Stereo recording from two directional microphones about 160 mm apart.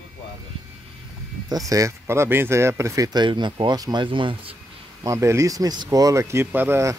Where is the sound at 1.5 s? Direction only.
20° right (ahead or behind).